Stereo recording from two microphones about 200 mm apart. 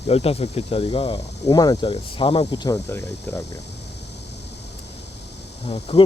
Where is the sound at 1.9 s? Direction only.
30° left (ahead or behind); by 3.6 s 15° left (ahead or behind).